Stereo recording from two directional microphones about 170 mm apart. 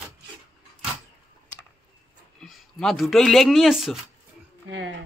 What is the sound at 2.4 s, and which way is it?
Speech, centre (ahead or behind).